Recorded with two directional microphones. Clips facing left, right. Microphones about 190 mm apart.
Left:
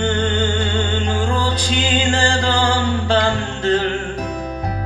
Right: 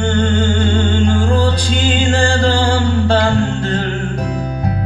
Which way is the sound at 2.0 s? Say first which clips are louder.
Right 4 dB; 30° right (ahead or behind).